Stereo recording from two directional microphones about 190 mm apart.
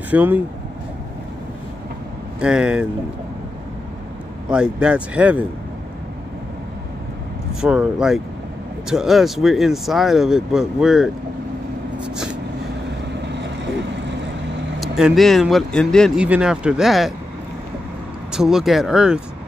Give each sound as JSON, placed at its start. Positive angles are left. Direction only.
{"t": 0.1, "sound": "speech", "side_deg": -10}
{"t": 2.4, "sound": "speech", "side_deg": -5}
{"t": 4.5, "sound": "speech", "side_deg": -5}
{"t": 7.6, "sound": "speech", "side_deg": -5}
{"t": 13.2, "sound": "vehicle", "side_deg": -65}
{"t": 14.8, "sound": "speech", "side_deg": 0}
{"t": 18.3, "sound": "speech", "side_deg": -5}